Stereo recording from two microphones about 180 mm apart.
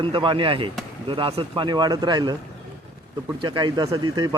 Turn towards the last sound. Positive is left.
turn(degrees=-20)  # may be behind; listen again after turning